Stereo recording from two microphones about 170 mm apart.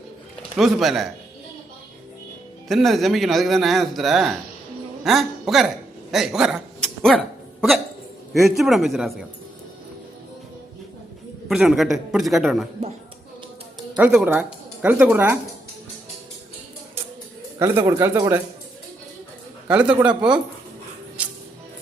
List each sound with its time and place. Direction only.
0.5 s a man's voice: centre (ahead or behind)
2.6 s a man's voice: centre (ahead or behind)
8.4 s a man's voice: centre (ahead or behind)
11.4 s a man's voice: centre (ahead or behind)
13.9 s speech: 5° right (ahead or behind)
17.6 s speech: 15° right (ahead or behind)
19.6 s speech: 5° right (ahead or behind)
21.2 s music: 5° right (ahead or behind)